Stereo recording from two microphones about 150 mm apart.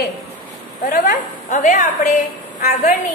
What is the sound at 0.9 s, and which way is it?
Speech, 65° left (ahead or behind).